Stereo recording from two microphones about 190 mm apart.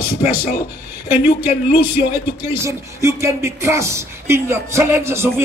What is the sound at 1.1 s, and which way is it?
Speech, 10° right (ahead or behind).